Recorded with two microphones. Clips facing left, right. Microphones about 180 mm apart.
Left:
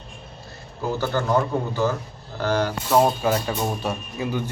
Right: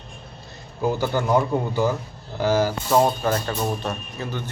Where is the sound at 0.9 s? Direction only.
15° right (ahead or behind).